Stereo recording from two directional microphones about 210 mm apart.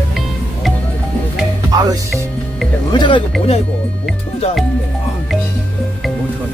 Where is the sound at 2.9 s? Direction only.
20° left (ahead or behind).